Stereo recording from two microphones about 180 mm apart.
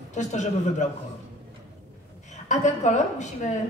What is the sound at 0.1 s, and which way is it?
Speech, 40° left (ahead or behind).